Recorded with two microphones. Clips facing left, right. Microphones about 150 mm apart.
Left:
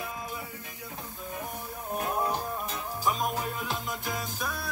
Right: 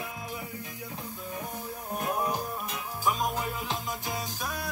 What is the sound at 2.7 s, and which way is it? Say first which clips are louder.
Music: right 1 dB; centre (ahead or behind).